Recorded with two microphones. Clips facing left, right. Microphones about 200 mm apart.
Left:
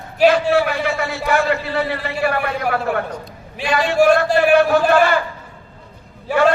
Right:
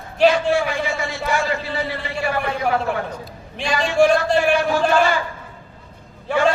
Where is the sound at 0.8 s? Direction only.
60° left (ahead or behind).